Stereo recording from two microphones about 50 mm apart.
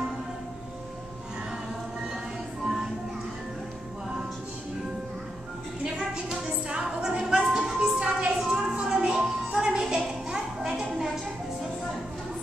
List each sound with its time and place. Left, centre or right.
2.6 s music: centre
5.9 s music: centre